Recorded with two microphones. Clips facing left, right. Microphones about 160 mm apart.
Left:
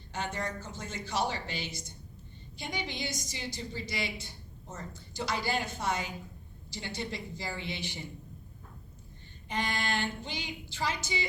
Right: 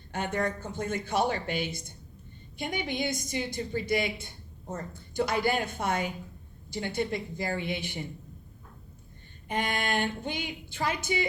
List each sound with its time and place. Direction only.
0.1 s a woman's voice: 55° right (ahead or behind)
9.5 s a woman's voice: 55° right (ahead or behind)